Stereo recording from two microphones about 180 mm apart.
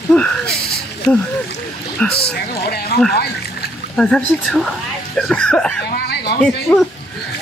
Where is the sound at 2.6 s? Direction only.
60° left (ahead or behind).